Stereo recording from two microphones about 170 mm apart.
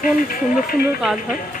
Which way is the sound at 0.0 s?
55° left (ahead or behind).